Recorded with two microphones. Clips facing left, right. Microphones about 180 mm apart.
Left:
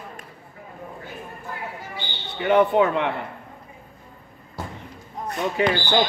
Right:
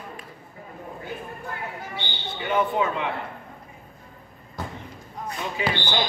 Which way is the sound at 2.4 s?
60° left (ahead or behind).